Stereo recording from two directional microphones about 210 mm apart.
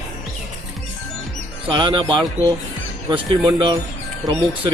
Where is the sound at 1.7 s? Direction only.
20° right (ahead or behind).